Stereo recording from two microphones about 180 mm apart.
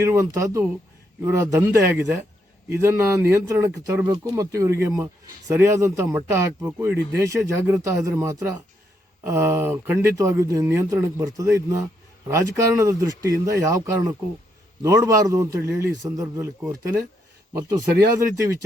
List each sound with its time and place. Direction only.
0.0 s speech: 15° right (ahead or behind)
18.2 s speech: 15° right (ahead or behind)